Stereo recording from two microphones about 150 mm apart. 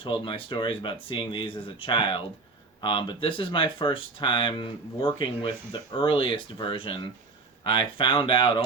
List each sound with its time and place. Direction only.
0.0 s speech: 35° left (ahead or behind)